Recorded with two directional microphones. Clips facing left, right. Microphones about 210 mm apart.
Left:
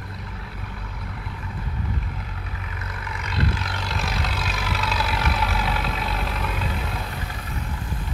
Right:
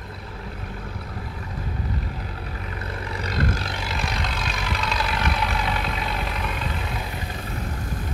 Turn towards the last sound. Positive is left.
turn(degrees=0)  # may be behind; listen again after turning